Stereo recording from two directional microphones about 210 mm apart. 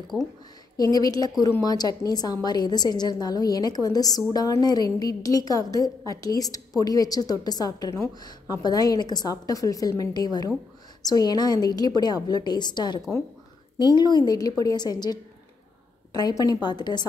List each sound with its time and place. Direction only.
0.1 s speech: 5° right (ahead or behind)
0.9 s a woman's voice: 15° left (ahead or behind)